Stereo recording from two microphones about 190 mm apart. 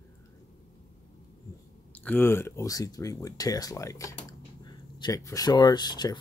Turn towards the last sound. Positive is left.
turn(degrees=20)  # may be behind; listen again after turning